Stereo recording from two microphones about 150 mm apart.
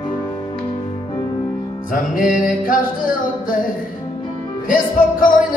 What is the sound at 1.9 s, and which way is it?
Music, 65° left (ahead or behind).